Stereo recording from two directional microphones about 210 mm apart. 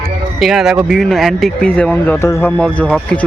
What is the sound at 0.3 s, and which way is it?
Speech, centre (ahead or behind).